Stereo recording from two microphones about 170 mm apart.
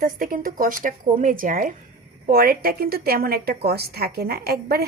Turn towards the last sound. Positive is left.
turn(degrees=-65)  # may be behind; listen again after turning